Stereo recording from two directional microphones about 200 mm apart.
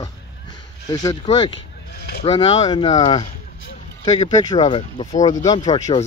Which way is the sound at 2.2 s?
30° left (ahead or behind).